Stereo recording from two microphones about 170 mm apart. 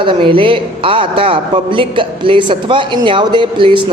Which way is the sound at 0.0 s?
30° right (ahead or behind).